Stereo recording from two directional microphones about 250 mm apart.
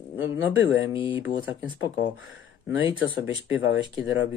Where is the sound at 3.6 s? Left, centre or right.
Left.